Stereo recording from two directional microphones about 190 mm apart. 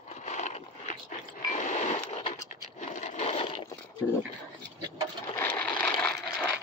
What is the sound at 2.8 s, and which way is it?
Wood, 40° left (ahead or behind).